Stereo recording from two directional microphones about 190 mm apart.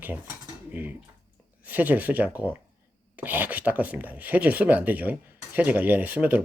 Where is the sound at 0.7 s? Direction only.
10° right (ahead or behind).